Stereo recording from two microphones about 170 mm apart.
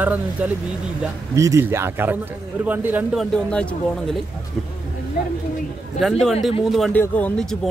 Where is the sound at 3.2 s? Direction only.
5° left (ahead or behind).